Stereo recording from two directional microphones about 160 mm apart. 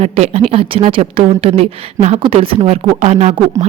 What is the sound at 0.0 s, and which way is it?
A woman's voice, 40° right (ahead or behind).